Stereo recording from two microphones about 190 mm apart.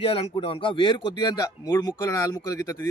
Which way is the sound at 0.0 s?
30° left (ahead or behind).